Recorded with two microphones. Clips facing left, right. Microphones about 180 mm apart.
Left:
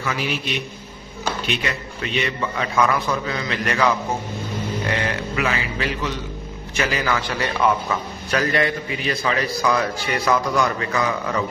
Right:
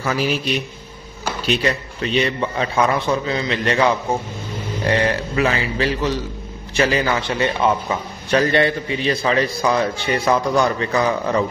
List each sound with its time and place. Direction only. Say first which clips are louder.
0.0 s speech: right 5 dB; 40° right (ahead or behind)
1.4 s a man's voice: right 6 dB; 35° right (ahead or behind)